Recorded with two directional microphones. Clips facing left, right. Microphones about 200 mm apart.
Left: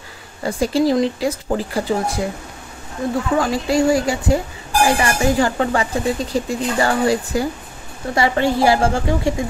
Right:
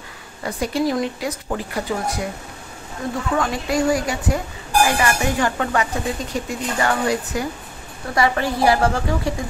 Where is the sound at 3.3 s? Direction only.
30° left (ahead or behind).